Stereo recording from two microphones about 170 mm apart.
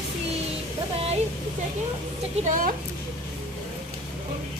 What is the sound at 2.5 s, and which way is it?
Speech, 55° right (ahead or behind).